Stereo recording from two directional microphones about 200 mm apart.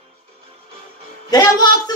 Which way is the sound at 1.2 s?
20° left (ahead or behind).